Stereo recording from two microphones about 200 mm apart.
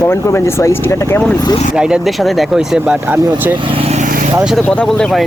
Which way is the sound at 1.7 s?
5° right (ahead or behind).